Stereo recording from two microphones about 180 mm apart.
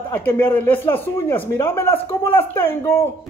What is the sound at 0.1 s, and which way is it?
Speech, 10° left (ahead or behind).